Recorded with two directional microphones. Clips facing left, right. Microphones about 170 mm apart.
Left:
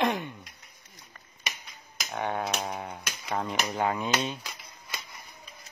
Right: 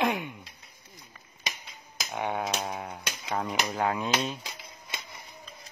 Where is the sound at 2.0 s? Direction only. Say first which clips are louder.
Even; 10° right (ahead or behind).